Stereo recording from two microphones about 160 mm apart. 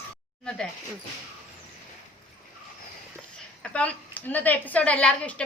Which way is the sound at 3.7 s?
5° left (ahead or behind).